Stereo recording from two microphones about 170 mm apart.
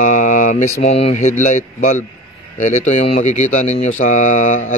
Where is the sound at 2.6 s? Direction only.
45° left (ahead or behind).